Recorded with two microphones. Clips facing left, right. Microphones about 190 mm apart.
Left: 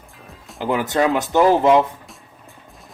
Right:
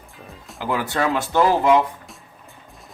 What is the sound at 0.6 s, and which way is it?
Speech, 20° left (ahead or behind).